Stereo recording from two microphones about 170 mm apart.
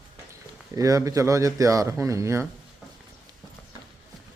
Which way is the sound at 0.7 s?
20° right (ahead or behind).